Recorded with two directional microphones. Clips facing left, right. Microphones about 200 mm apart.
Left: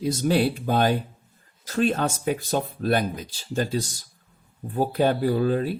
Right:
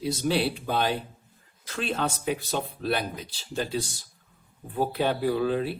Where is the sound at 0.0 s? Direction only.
45° left (ahead or behind).